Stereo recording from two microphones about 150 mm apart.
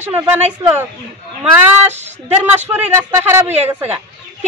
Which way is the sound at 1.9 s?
15° right (ahead or behind).